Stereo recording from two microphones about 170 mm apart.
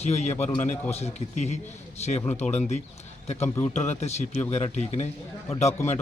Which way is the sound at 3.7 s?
40° left (ahead or behind).